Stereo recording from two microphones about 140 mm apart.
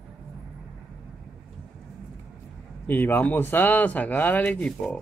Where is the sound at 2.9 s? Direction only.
15° left (ahead or behind).